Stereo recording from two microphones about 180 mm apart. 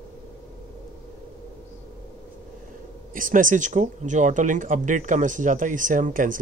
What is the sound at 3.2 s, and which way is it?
Speech, 45° right (ahead or behind).